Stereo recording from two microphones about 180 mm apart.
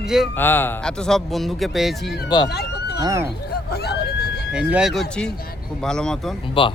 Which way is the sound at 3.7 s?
60° left (ahead or behind).